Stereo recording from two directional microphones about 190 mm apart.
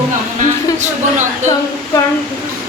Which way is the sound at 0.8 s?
40° right (ahead or behind).